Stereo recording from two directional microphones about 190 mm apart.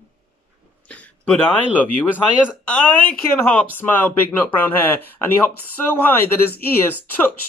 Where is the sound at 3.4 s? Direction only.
10° left (ahead or behind).